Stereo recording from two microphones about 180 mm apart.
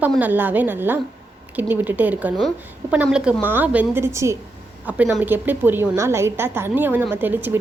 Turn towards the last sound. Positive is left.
turn(degrees=-10)  # may be behind; listen again after turning